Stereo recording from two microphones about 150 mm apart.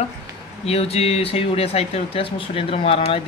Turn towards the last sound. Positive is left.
turn(degrees=40)  # may be behind; listen again after turning